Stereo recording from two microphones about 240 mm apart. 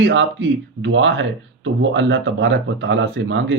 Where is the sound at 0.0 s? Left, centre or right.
Right.